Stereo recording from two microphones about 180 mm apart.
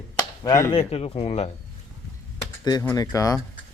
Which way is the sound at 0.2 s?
20° left (ahead or behind).